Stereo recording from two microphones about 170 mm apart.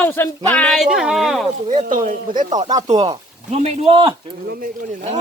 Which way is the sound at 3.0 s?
35° right (ahead or behind).